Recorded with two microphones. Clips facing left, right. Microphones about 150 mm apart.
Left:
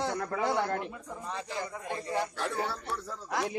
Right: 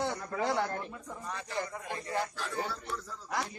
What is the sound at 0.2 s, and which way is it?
Speech, 65° left (ahead or behind).